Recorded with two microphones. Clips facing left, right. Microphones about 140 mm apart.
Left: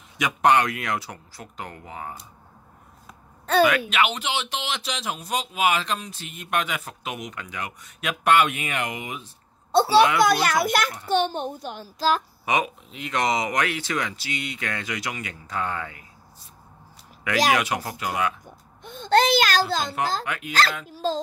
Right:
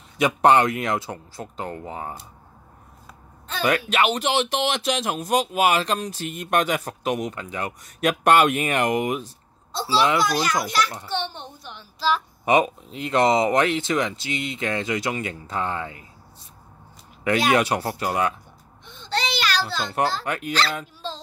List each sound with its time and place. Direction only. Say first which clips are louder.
0.2 s speech: right 3 dB; 30° right (ahead or behind)
3.9 s speech: right 3 dB; 40° right (ahead or behind)
9.7 s a child's voice: left 4 dB; 60° left (ahead or behind)
11.1 s a child's voice: left 7 dB; 45° left (ahead or behind)
12.4 s speech: right 6 dB; 35° right (ahead or behind)
17.5 s speech: right 3 dB; 35° right (ahead or behind)
18.9 s a sound: left 8 dB; 50° left (ahead or behind)
20.2 s speech: right 4 dB; 40° right (ahead or behind)
20.9 s speech: left 8 dB; 40° left (ahead or behind)